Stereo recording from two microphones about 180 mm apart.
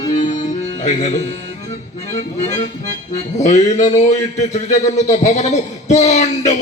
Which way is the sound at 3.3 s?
40° left (ahead or behind).